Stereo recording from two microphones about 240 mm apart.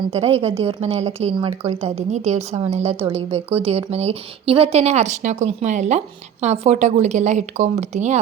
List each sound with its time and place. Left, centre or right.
0.1 s a woman's voice: right